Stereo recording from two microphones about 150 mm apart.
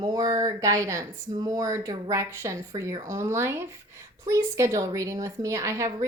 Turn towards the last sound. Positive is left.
turn(degrees=-20)  # may be behind; listen again after turning